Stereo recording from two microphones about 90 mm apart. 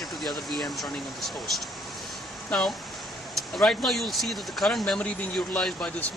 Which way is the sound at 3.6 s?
5° left (ahead or behind).